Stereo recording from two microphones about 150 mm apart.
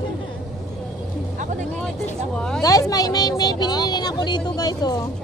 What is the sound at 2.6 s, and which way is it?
Vehicle, 25° left (ahead or behind).